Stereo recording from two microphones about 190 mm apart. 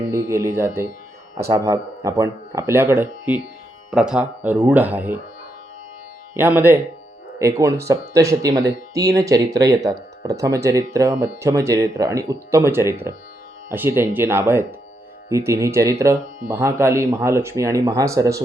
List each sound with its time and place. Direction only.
0.1 s speech: 15° right (ahead or behind)
6.3 s speech: 10° right (ahead or behind)